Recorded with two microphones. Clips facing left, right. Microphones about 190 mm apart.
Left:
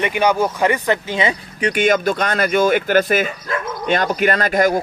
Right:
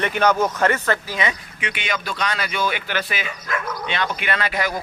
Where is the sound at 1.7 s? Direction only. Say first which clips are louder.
Left 12 dB; 45° left (ahead or behind).